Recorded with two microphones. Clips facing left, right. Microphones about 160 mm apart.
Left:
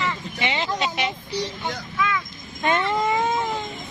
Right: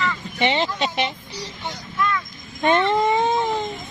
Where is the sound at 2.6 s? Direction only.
30° right (ahead or behind).